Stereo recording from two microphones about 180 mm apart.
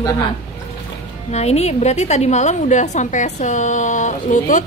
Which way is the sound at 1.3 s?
35° left (ahead or behind).